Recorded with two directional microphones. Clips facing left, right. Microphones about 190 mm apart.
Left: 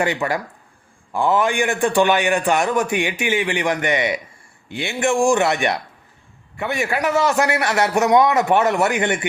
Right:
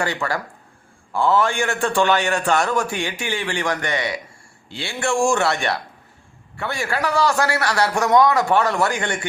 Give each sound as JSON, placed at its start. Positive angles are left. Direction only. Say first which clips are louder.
{"t": 0.0, "sound": "a man's voice", "louder": "left 3 dB", "side_deg": 20}